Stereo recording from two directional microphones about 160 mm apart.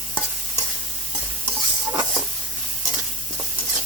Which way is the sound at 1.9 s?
25° right (ahead or behind).